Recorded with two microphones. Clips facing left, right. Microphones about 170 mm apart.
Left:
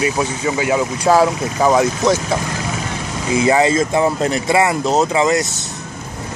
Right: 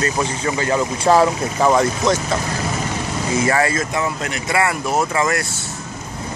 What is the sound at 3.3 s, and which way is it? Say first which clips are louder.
Speech: left 5 dB; 15° left (ahead or behind).